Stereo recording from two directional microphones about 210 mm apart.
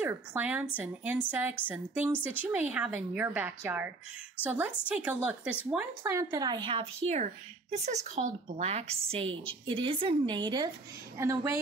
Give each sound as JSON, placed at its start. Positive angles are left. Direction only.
{"t": 0.0, "sound": "a woman's voice", "side_deg": -10}